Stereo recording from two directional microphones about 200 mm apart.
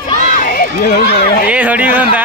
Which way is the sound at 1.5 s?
5° right (ahead or behind).